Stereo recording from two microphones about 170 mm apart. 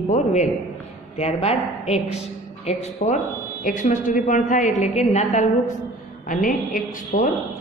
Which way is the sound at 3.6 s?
50° left (ahead or behind).